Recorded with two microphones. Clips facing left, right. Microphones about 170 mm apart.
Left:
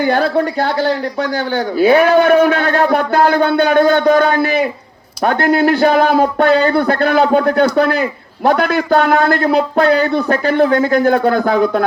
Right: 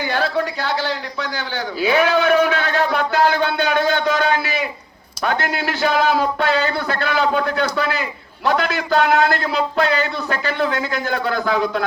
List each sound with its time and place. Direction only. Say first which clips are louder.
0.0 s a man's voice: left 7 dB; 55° left (ahead or behind)